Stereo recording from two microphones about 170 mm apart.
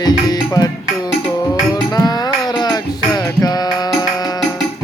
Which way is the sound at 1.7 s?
25° left (ahead or behind).